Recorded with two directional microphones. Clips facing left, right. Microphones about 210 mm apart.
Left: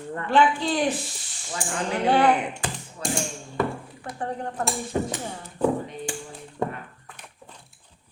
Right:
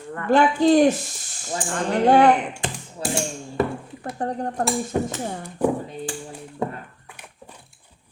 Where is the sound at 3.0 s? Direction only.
30° right (ahead or behind).